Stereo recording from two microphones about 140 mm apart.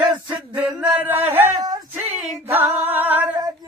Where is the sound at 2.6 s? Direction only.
15° right (ahead or behind).